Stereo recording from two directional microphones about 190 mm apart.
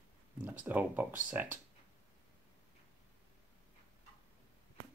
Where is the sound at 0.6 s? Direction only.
10° right (ahead or behind).